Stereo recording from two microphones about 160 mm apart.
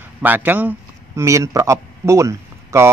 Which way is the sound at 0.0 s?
10° right (ahead or behind).